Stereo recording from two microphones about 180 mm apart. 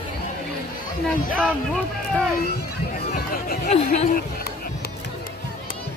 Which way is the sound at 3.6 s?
35° left (ahead or behind).